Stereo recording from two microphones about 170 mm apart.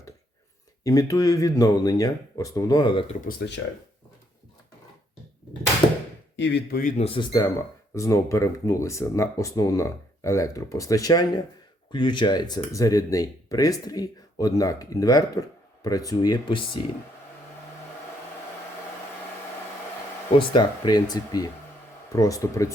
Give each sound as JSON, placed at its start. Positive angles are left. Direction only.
{"t": 0.9, "sound": "speech", "side_deg": 20}
{"t": 6.3, "sound": "speech", "side_deg": 90}
{"t": 6.9, "sound": "speech", "side_deg": 35}
{"t": 20.3, "sound": "speech", "side_deg": 30}